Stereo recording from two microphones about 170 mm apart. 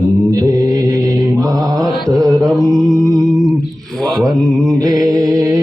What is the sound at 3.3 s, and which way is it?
Mantra, centre (ahead or behind).